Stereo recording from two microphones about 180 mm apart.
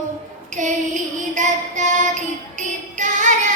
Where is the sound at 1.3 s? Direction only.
40° right (ahead or behind).